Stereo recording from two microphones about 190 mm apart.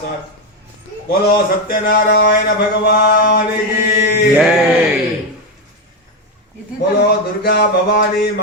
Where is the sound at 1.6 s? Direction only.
50° left (ahead or behind).